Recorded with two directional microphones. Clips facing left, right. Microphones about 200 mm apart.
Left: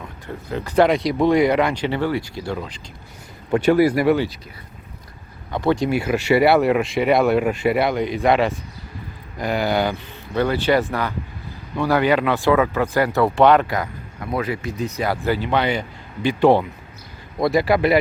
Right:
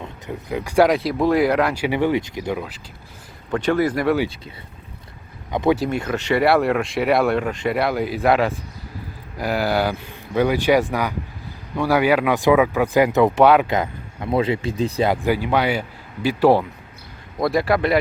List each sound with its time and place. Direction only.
0.0 s speech: 15° right (ahead or behind)
3.6 s speech: 10° left (ahead or behind)
5.5 s speech: 15° right (ahead or behind)
5.7 s speech: centre (ahead or behind); by 13.4 s 20° right (ahead or behind)
13.4 s speech: 5° right (ahead or behind)
13.7 s speech: 25° right (ahead or behind)
15.1 s speech: 15° right (ahead or behind); by 18.0 s 5° left (ahead or behind)